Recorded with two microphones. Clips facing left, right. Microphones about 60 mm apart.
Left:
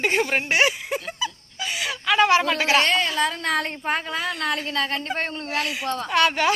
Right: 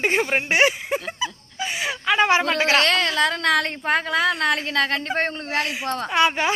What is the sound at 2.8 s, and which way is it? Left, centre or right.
A woman's voice, right.